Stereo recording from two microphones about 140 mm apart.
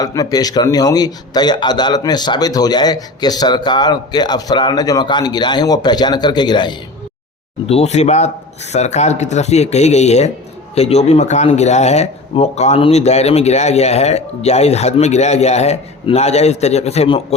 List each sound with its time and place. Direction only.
0.0 s a man's voice: 25° left (ahead or behind)
7.7 s a man's voice: 50° left (ahead or behind)